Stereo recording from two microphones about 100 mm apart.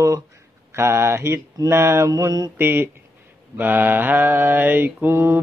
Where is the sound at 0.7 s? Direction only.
25° right (ahead or behind).